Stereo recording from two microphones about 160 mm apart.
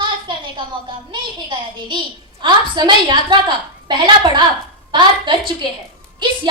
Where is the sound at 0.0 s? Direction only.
30° right (ahead or behind).